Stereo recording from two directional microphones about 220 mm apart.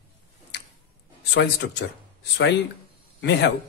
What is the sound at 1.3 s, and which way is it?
Speech, 50° left (ahead or behind).